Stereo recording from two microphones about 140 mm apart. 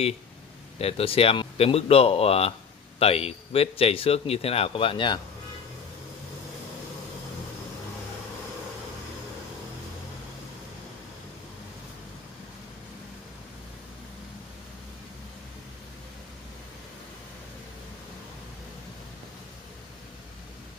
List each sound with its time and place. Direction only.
0.7 s speech: 45° left (ahead or behind)